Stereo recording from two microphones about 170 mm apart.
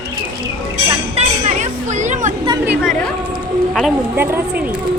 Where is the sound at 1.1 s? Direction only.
45° right (ahead or behind).